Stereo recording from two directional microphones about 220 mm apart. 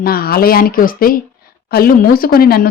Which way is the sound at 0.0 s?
40° left (ahead or behind).